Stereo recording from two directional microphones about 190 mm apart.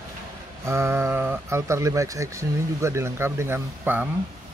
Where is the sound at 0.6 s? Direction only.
15° right (ahead or behind).